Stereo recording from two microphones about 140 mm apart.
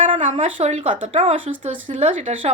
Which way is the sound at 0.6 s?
45° right (ahead or behind).